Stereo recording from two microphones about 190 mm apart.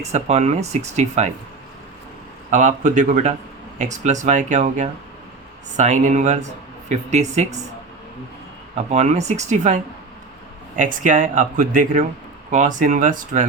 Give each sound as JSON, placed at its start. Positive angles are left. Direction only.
{"t": 0.0, "sound": "speech", "side_deg": -35}
{"t": 2.5, "sound": "speech", "side_deg": -40}
{"t": 8.7, "sound": "speech", "side_deg": -35}